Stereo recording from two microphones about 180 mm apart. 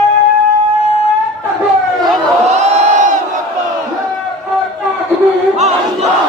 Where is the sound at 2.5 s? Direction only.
40° right (ahead or behind).